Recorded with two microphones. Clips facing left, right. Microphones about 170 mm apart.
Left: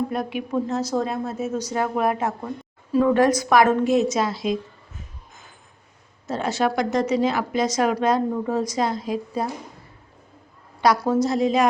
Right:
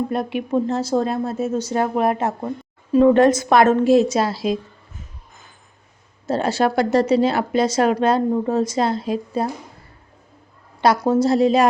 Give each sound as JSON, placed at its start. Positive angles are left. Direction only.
{"t": 0.1, "sound": "a woman's voice", "side_deg": -25}
{"t": 6.2, "sound": "speech", "side_deg": -30}
{"t": 10.8, "sound": "a woman's voice", "side_deg": -25}